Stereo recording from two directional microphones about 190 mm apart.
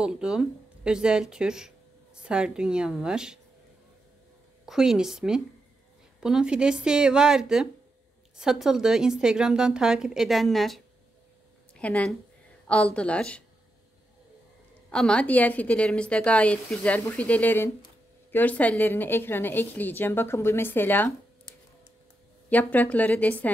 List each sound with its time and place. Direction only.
0.0 s a woman's voice: 5° right (ahead or behind)
4.6 s a woman's voice: 5° right (ahead or behind)
14.9 s a woman's voice: 5° left (ahead or behind)
22.5 s a woman's voice: 10° left (ahead or behind)